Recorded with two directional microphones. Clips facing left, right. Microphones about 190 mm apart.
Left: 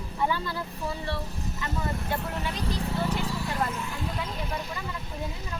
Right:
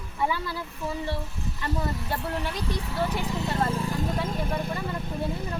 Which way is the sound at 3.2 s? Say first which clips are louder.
Right 3 dB; 20° right (ahead or behind).